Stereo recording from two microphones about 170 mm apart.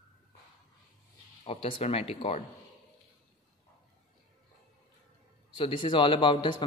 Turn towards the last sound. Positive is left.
turn(degrees=25)  # may be behind; listen again after turning